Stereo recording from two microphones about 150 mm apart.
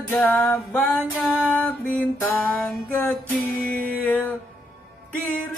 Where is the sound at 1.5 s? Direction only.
10° left (ahead or behind).